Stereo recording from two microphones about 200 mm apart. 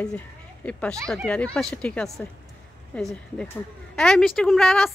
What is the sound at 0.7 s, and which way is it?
A woman's voice, 5° left (ahead or behind).